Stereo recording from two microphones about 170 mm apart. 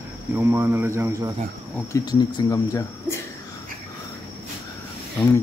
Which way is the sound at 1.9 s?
20° left (ahead or behind).